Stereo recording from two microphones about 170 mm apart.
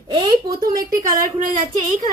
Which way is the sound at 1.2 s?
50° right (ahead or behind).